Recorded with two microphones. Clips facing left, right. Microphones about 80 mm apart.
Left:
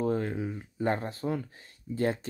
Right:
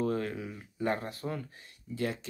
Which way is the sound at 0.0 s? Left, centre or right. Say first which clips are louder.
Left 3 dB; left.